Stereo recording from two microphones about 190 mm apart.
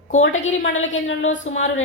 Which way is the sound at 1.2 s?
40° left (ahead or behind).